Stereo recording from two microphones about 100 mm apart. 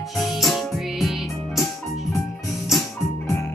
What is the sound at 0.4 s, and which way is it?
Music, centre (ahead or behind).